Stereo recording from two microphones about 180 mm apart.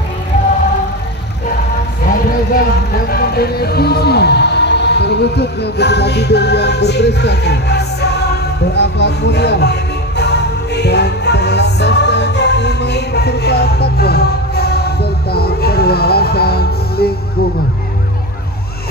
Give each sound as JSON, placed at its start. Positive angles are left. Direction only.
{"t": 2.5, "sound": "music", "side_deg": 55}